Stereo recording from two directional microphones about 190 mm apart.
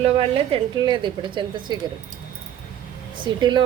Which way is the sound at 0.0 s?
30° right (ahead or behind).